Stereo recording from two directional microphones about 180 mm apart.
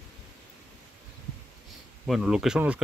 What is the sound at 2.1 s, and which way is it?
Speech, 5° right (ahead or behind).